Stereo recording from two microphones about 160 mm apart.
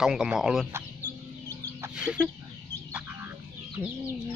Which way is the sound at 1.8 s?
5° right (ahead or behind).